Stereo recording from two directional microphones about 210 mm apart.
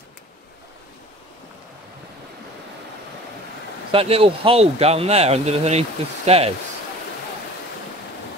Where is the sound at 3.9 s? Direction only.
25° right (ahead or behind).